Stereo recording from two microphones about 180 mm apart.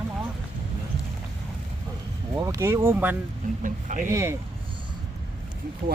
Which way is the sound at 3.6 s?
45° right (ahead or behind).